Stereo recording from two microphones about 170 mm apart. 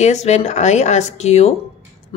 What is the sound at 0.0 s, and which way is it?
Speech, 40° left (ahead or behind).